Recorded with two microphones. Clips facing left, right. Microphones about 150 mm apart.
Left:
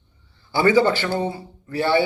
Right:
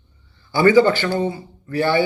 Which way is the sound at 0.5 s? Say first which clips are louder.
Right 3 dB; 15° left (ahead or behind).